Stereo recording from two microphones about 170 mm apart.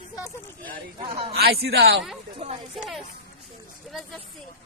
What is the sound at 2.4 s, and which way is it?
Speech, 35° right (ahead or behind).